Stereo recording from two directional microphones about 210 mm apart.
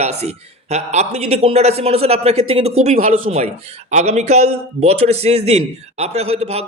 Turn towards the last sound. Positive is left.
turn(degrees=-30)  # may be behind; listen again after turning